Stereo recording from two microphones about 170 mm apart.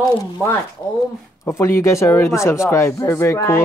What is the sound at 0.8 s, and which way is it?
Speech, 20° left (ahead or behind).